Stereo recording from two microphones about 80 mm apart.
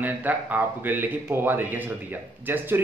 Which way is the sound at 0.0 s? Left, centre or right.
Right.